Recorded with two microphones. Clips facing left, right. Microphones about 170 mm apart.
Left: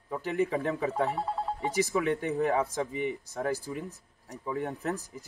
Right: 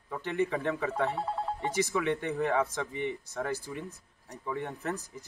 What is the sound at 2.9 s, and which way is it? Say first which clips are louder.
Speech: left 2 dB; 5° left (ahead or behind).